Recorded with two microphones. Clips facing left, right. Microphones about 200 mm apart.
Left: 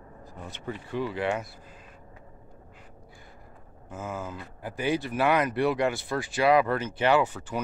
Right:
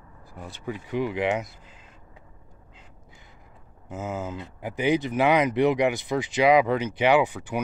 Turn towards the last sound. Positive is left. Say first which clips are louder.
# right 3 dB
turn(degrees=-15)  # may be behind; listen again after turning